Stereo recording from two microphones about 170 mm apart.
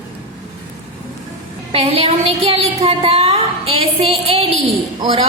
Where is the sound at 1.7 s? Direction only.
35° right (ahead or behind).